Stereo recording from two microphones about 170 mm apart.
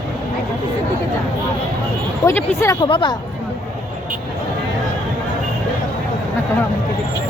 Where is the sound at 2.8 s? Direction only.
25° left (ahead or behind).